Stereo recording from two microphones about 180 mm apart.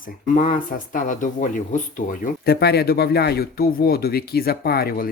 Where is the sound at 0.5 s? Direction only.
50° left (ahead or behind).